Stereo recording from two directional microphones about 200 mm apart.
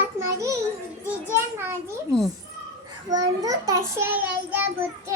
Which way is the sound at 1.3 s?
10° right (ahead or behind).